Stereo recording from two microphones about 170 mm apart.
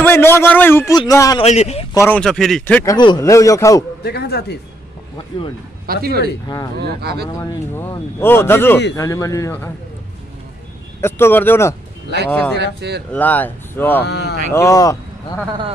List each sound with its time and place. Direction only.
0.0 s a man's voice: 15° left (ahead or behind)
1.4 s a man's voice: 40° left (ahead or behind)
2.0 s a man's voice: 10° left (ahead or behind)
4.0 s speech: 70° left (ahead or behind)
5.9 s speech: 60° right (ahead or behind)
6.4 s speech: 20° left (ahead or behind)
6.8 s speech: 70° right (ahead or behind)
7.3 s a man's voice: 15° left (ahead or behind)
11.0 s a man's voice: 15° left (ahead or behind)
12.5 s speech: 75° right (ahead or behind)
13.1 s a man's voice: 10° left (ahead or behind)
14.0 s speech: 85° left
14.5 s speech: 20° left (ahead or behind)